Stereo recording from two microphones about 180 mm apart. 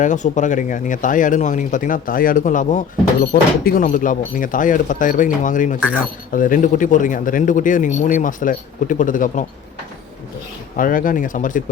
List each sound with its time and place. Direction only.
0.0 s speech: 45° left (ahead or behind)
10.8 s speech: 50° left (ahead or behind)